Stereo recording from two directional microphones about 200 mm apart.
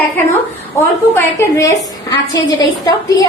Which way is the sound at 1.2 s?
15° left (ahead or behind).